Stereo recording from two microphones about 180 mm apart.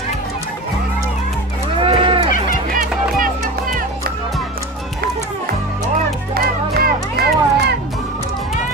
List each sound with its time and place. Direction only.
1.8 s livestock: 30° right (ahead or behind)
6.3 s music: 60° right (ahead or behind)